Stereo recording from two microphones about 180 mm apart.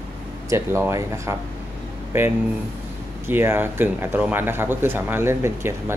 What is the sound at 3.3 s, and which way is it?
Speech, 10° right (ahead or behind).